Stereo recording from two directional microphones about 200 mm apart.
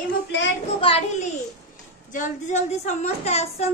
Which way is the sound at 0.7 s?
30° left (ahead or behind).